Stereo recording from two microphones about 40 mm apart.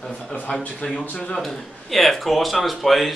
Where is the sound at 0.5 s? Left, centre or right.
Left.